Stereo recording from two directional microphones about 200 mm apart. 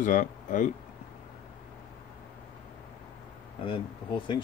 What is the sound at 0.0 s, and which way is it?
Speech, 40° left (ahead or behind).